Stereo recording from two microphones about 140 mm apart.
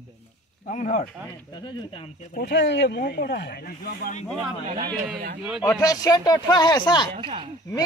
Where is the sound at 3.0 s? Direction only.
90° left.